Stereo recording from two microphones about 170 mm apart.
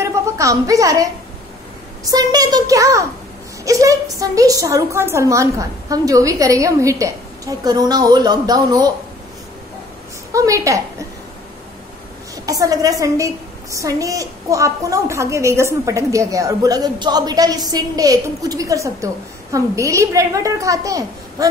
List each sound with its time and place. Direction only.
0.0 s a woman's voice: 20° right (ahead or behind)
2.0 s a woman's voice: 20° right (ahead or behind)
10.3 s a woman's voice: 20° right (ahead or behind)
12.4 s a woman's voice: 20° right (ahead or behind)